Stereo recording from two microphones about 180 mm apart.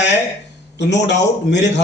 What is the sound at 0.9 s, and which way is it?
Speech, 75° left (ahead or behind).